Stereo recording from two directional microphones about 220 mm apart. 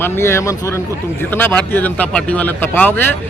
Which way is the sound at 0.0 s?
10° left (ahead or behind).